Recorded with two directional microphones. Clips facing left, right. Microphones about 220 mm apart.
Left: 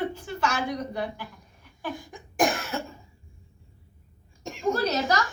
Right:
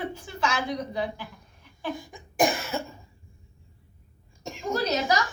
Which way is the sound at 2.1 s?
5° right (ahead or behind).